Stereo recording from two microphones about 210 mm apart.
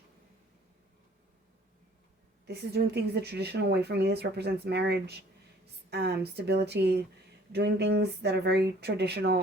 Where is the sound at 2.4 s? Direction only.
50° right (ahead or behind).